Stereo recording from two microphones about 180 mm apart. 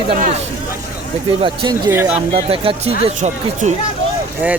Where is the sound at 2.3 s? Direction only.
30° right (ahead or behind).